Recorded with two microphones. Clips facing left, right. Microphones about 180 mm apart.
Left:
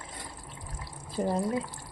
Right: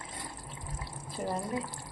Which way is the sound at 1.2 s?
30° left (ahead or behind).